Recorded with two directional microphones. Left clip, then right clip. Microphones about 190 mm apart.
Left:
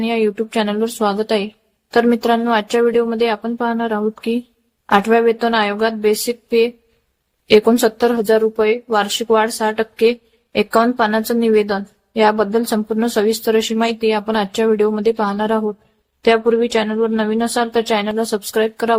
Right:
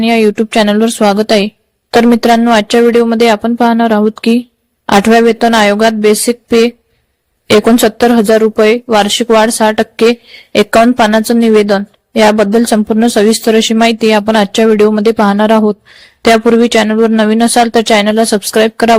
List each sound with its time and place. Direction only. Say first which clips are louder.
0.0 s a woman's voice: right 8 dB; 35° right (ahead or behind)